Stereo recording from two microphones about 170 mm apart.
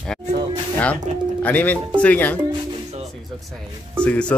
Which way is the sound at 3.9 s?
5° left (ahead or behind).